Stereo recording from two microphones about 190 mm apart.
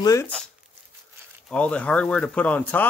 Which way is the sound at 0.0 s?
15° left (ahead or behind).